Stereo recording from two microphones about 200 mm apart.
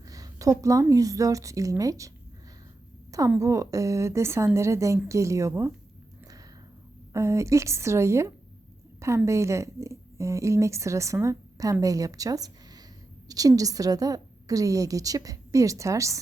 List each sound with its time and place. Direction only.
0.1 s a woman's voice: 15° right (ahead or behind)
3.1 s a woman's voice: 15° right (ahead or behind)
7.1 s a woman's voice: 15° right (ahead or behind)